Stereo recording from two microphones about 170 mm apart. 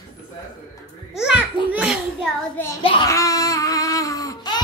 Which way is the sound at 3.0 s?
20° left (ahead or behind).